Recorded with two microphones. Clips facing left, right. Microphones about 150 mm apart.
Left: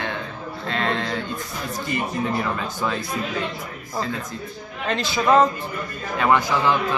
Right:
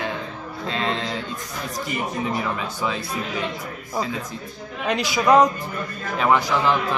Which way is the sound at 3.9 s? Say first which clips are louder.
Right 1 dB; 10° right (ahead or behind).